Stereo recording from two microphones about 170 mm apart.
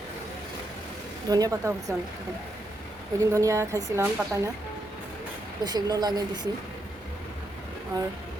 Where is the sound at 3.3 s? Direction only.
20° right (ahead or behind).